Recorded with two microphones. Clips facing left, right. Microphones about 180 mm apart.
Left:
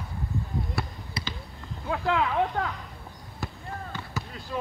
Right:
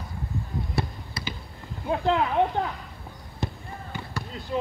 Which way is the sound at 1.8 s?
25° right (ahead or behind).